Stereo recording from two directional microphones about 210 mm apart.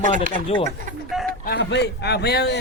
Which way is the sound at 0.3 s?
25° left (ahead or behind).